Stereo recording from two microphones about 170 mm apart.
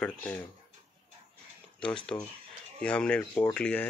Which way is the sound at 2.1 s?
15° left (ahead or behind).